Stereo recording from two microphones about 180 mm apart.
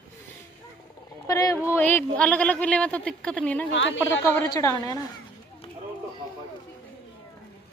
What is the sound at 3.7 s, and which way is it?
Speech, 90° left.